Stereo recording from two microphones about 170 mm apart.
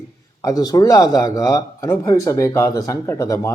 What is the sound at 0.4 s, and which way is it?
Speech, 20° left (ahead or behind).